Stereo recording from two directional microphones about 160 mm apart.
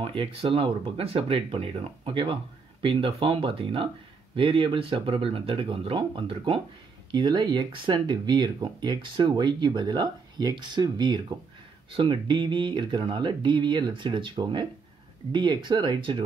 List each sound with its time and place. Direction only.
0.0 s speech: 35° right (ahead or behind)